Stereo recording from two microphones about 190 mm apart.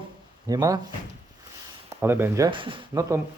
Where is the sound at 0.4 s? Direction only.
20° right (ahead or behind).